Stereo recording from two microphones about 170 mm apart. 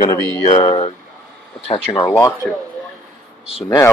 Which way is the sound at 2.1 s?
15° left (ahead or behind).